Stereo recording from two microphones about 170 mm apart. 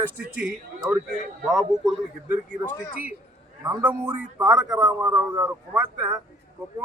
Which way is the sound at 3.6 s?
20° right (ahead or behind).